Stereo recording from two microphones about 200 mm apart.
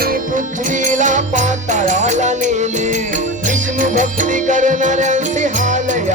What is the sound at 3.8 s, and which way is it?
Music, 40° right (ahead or behind).